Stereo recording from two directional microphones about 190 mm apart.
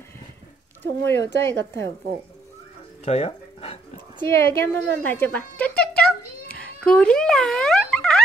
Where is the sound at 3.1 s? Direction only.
35° left (ahead or behind).